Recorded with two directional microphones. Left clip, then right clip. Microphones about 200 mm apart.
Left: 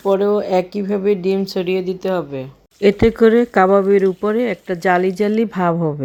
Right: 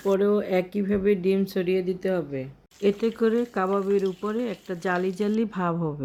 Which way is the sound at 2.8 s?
25° left (ahead or behind).